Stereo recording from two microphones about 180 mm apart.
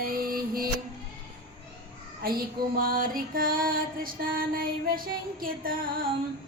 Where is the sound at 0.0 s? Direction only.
55° right (ahead or behind).